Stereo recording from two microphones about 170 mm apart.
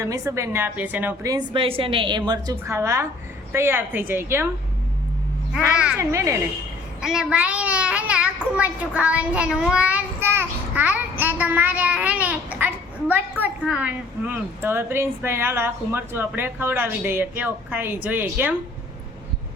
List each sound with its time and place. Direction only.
0.0 s a child's voice: 15° right (ahead or behind)
1.3 s a woman's voice: 30° right (ahead or behind)
5.5 s a child's voice: 5° right (ahead or behind)
6.0 s a child's voice: 15° right (ahead or behind)
7.0 s a child's voice: 5° right (ahead or behind)